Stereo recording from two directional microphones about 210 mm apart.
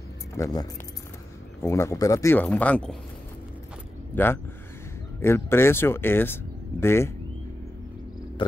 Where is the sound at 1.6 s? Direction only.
15° left (ahead or behind).